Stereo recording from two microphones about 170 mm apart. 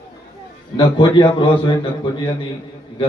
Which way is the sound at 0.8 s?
25° left (ahead or behind).